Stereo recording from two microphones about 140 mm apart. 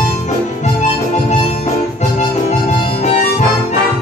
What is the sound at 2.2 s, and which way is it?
Music, 55° left (ahead or behind).